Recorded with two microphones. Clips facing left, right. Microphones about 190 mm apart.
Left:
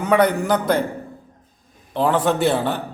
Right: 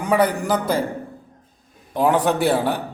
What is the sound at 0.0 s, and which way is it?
Speech, 5° right (ahead or behind).